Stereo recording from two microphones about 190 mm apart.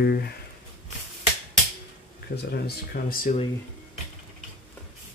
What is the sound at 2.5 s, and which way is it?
Speech, 55° left (ahead or behind).